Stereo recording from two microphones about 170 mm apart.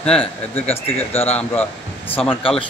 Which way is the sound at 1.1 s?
35° left (ahead or behind).